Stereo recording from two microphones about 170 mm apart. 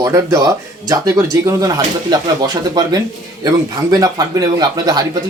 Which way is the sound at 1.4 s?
20° right (ahead or behind).